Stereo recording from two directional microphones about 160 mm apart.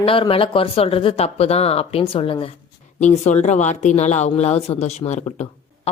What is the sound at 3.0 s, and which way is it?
Speech, 45° left (ahead or behind).